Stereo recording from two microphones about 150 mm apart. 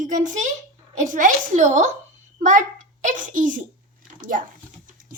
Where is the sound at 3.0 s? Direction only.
60° right (ahead or behind).